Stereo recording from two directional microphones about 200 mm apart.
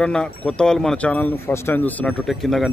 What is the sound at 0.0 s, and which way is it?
Speech, 5° left (ahead or behind).